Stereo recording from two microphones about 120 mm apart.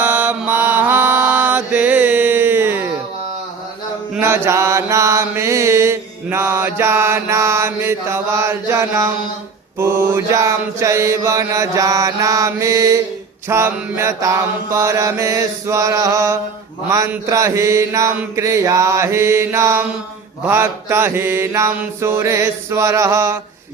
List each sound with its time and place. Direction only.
0.0 s mantra: 15° right (ahead or behind)
4.2 s mantra: 20° right (ahead or behind)